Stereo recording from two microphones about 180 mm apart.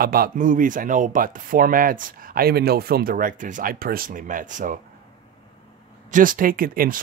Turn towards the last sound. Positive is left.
turn(degrees=-50)  # may be behind; listen again after turning